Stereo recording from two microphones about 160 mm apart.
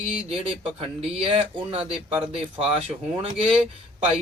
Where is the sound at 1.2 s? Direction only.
40° right (ahead or behind).